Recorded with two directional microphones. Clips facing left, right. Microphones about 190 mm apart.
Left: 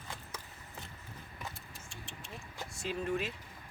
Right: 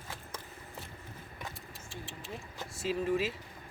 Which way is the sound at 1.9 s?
Centre (ahead or behind).